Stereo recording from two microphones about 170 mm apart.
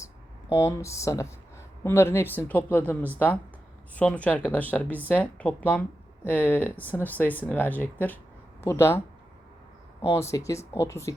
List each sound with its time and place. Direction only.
0.5 s speech: 15° left (ahead or behind)
10.1 s speech: 15° left (ahead or behind)